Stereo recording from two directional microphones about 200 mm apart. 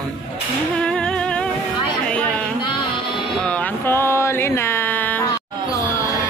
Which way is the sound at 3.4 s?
5° left (ahead or behind).